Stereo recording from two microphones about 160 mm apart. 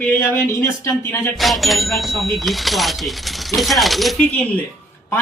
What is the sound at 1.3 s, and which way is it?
A woman's voice, centre (ahead or behind).